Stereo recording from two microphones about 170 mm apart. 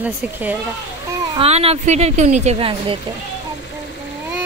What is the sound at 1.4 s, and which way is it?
Speech, 35° right (ahead or behind).